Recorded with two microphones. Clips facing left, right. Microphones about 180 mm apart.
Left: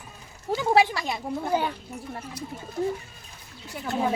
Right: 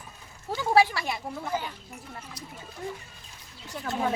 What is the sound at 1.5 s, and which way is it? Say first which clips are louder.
Speech: left 7 dB; 65° left (ahead or behind).